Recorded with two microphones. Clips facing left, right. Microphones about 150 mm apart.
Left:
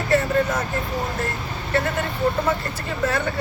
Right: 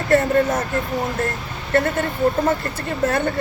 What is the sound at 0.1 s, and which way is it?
Speech, 50° right (ahead or behind).